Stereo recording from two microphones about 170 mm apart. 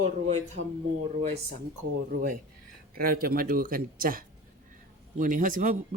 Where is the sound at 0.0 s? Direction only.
40° right (ahead or behind).